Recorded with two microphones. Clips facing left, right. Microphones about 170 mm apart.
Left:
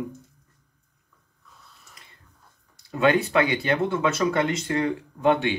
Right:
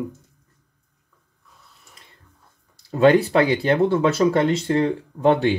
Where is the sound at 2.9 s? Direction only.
35° right (ahead or behind).